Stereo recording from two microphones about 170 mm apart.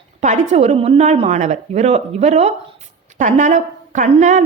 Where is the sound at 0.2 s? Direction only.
40° right (ahead or behind).